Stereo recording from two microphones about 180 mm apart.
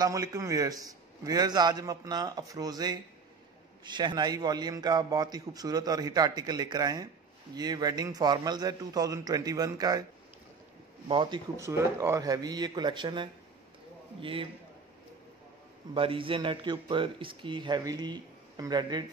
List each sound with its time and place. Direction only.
0.0 s a man's voice: 20° right (ahead or behind)
11.1 s a man's voice: 25° right (ahead or behind)
15.9 s a man's voice: 30° right (ahead or behind)